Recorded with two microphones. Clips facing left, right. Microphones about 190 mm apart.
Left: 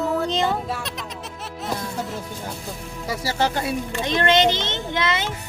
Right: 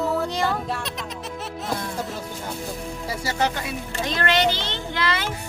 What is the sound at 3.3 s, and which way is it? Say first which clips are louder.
A child's voice: left 2 dB; 30° left (ahead or behind).